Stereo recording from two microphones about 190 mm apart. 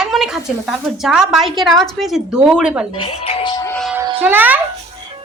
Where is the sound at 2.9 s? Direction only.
30° left (ahead or behind).